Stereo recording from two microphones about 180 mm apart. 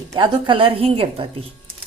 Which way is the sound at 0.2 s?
30° right (ahead or behind).